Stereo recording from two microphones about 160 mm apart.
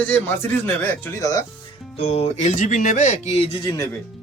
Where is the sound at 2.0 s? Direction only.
40° left (ahead or behind).